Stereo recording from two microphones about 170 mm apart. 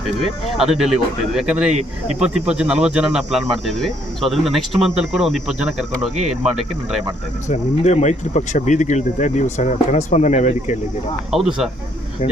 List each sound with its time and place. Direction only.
0.5 s speech: centre (ahead or behind)
7.4 s speech: 45° left (ahead or behind)
11.3 s speech: 5° right (ahead or behind)